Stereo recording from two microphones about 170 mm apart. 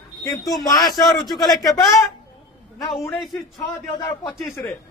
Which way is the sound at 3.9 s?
15° left (ahead or behind).